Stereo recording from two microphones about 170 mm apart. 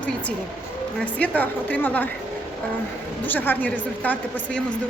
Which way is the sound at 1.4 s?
10° left (ahead or behind).